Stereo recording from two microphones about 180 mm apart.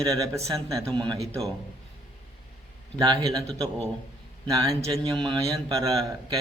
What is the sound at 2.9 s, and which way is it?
Speech, 25° right (ahead or behind).